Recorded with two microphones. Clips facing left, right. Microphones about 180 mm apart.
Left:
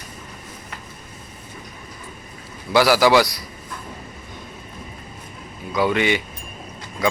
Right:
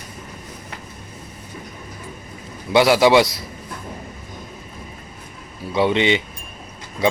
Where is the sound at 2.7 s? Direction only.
25° right (ahead or behind).